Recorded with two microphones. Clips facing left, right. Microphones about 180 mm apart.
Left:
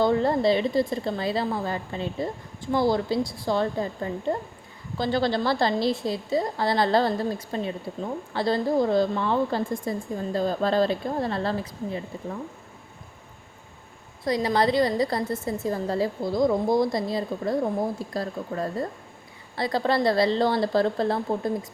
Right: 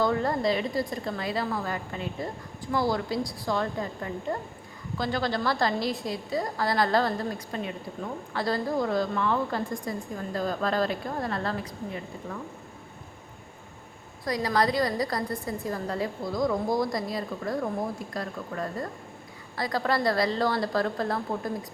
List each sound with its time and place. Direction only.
0.0 s a woman's voice: 25° left (ahead or behind)
14.3 s a woman's voice: 25° left (ahead or behind)